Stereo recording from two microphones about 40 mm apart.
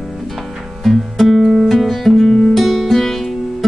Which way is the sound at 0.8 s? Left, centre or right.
Centre.